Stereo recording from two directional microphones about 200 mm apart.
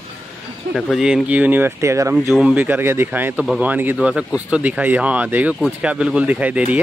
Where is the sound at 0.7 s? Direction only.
Centre (ahead or behind).